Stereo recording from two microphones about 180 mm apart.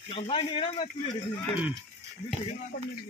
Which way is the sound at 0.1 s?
30° left (ahead or behind).